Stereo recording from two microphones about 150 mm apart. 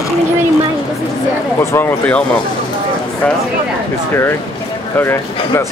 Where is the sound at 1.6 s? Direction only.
15° left (ahead or behind).